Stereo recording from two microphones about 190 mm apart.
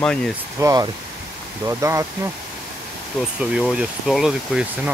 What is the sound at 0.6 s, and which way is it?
Speech, 20° right (ahead or behind).